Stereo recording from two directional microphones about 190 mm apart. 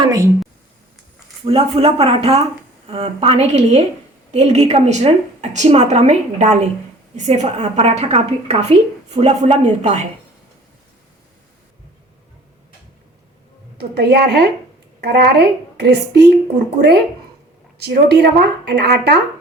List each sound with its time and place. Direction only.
0.0 s speech: 20° right (ahead or behind)
1.5 s a woman's voice: 30° right (ahead or behind)
13.7 s speech: 60° right (ahead or behind)